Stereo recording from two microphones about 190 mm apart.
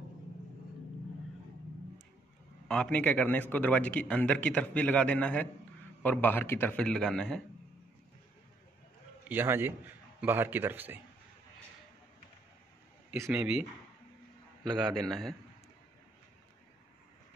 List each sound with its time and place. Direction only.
2.7 s a man's voice: 5° left (ahead or behind)
9.3 s a man's voice: 10° right (ahead or behind)
13.1 s speech: 10° right (ahead or behind)
15.0 s speech: centre (ahead or behind)